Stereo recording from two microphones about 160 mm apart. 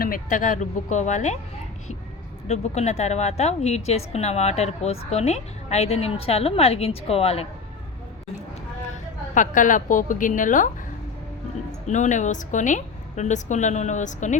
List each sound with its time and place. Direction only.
0.0 s a woman's voice: 60° left (ahead or behind)
2.5 s a woman's voice: 45° left (ahead or behind)
9.3 s a woman's voice: 55° left (ahead or behind)
11.9 s a woman's voice: 50° left (ahead or behind)